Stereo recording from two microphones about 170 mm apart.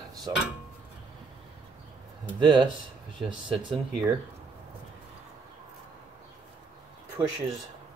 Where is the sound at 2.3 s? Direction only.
25° right (ahead or behind).